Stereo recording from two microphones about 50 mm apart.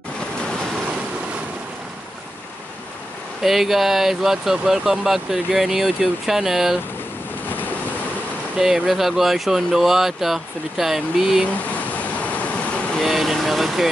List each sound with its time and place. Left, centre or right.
3.4 s speech: centre
8.5 s speech: centre
12.4 s vehicle: left
13.0 s speech: centre